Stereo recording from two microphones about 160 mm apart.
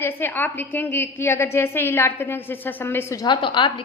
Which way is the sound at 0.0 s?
15° left (ahead or behind).